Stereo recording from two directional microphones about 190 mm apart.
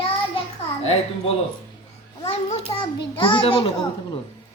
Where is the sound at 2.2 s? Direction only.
35° left (ahead or behind).